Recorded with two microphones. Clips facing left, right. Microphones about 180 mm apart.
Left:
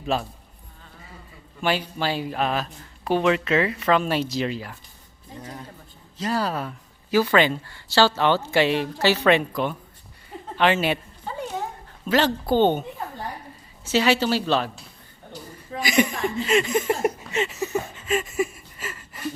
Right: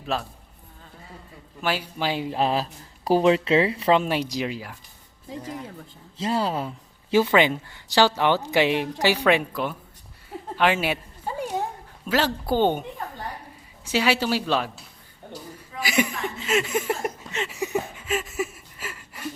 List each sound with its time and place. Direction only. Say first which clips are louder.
0.1 s speech: left 2 dB; centre (ahead or behind)
1.6 s speech: left 3 dB; 5° right (ahead or behind)
2.0 s speech: right 1 dB; 15° right (ahead or behind)
4.0 s speech: left 1 dB; 15° right (ahead or behind)
6.1 s speech: right 1 dB; 25° right (ahead or behind); by 9.7 s 5° right (ahead or behind)
10.3 s a sound: left 1 dB; 10° right (ahead or behind)
12.0 s speech: left 3 dB; 10° right (ahead or behind)
13.8 s speech: left 2 dB; 10° right (ahead or behind)
15.8 s speech: left 3 dB; 5° right (ahead or behind)
17.0 s a sound: left 6 dB; 5° left (ahead or behind)
17.5 s a sound: even; 15° right (ahead or behind)